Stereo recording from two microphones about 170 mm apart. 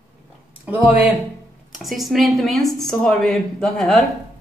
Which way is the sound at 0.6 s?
10° right (ahead or behind).